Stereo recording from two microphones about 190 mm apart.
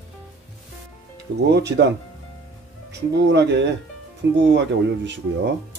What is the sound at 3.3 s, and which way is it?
Speech, 65° right (ahead or behind).